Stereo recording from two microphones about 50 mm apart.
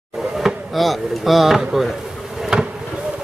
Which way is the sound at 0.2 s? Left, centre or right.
Centre.